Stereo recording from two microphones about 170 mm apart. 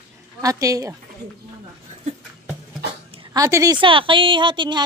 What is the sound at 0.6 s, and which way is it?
Speech, 20° right (ahead or behind).